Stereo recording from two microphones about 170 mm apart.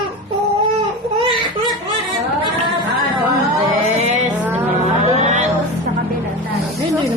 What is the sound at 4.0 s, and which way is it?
Music, 40° right (ahead or behind).